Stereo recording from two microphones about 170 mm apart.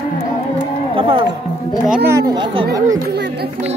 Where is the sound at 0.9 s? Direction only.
30° right (ahead or behind).